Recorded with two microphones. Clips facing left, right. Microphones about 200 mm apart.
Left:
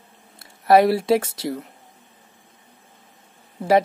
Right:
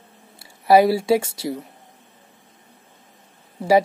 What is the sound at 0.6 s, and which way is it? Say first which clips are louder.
Speech: right 1 dB; centre (ahead or behind).